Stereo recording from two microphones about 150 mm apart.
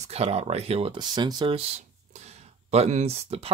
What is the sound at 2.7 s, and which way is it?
Speech, 45° right (ahead or behind).